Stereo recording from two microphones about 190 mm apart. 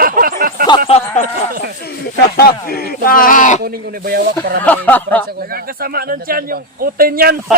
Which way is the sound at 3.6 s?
55° right (ahead or behind).